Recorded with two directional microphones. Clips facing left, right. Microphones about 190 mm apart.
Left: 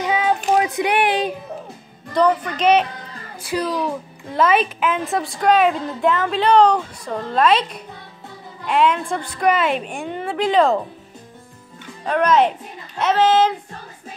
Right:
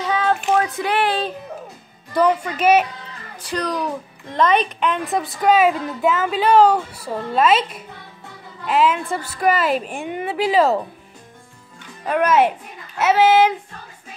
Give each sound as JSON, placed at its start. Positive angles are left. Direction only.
{"t": 0.0, "sound": "a sound", "side_deg": 15}
{"t": 0.5, "sound": "speech", "side_deg": 15}
{"t": 2.1, "sound": "a child's voice", "side_deg": -10}
{"t": 3.4, "sound": "a woman's voice", "side_deg": 5}
{"t": 12.0, "sound": "a child's voice", "side_deg": -5}